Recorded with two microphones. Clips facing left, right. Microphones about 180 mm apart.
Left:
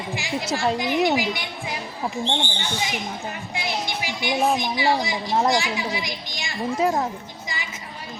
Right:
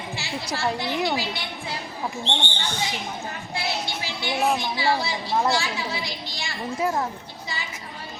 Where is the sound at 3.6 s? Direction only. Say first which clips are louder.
Left 1 dB; 15° left (ahead or behind).